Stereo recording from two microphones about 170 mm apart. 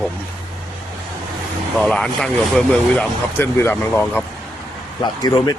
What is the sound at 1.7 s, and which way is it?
Speech, 5° left (ahead or behind).